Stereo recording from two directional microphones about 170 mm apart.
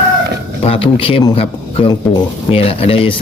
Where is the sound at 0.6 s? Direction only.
35° left (ahead or behind).